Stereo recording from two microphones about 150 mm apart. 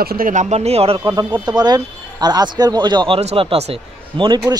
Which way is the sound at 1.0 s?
25° right (ahead or behind).